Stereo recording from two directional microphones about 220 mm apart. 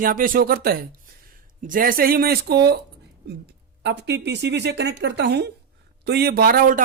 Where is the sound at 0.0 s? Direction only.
40° right (ahead or behind).